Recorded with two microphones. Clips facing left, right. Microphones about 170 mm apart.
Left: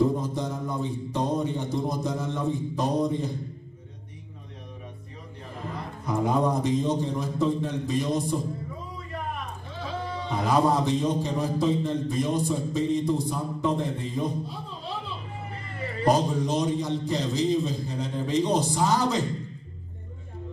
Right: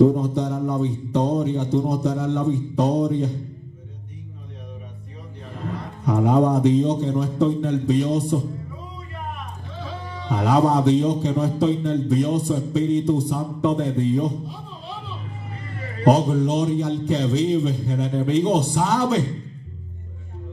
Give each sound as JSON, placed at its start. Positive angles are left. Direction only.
{"t": 0.2, "sound": "a sound", "side_deg": -65}
{"t": 6.0, "sound": "a man's voice", "side_deg": -65}
{"t": 10.3, "sound": "a man's voice", "side_deg": -65}
{"t": 16.0, "sound": "a man's voice", "side_deg": -65}